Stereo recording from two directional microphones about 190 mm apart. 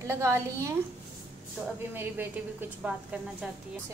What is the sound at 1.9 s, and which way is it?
A woman's voice, 10° right (ahead or behind).